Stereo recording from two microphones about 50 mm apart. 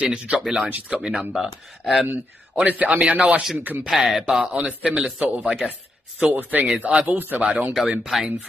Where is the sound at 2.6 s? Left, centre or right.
Right.